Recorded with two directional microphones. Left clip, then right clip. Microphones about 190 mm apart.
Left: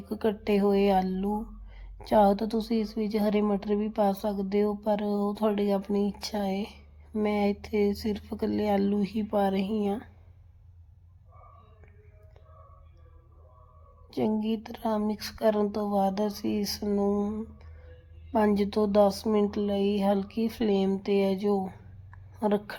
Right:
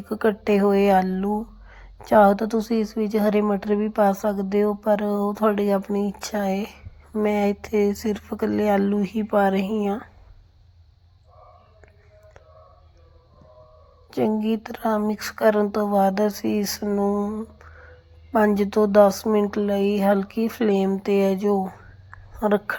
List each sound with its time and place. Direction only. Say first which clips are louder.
0.1 s speech: right 7 dB; 10° right (ahead or behind)
14.1 s speech: right 6 dB; 10° right (ahead or behind)